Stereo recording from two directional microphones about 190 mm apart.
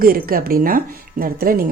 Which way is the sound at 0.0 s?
50° right (ahead or behind).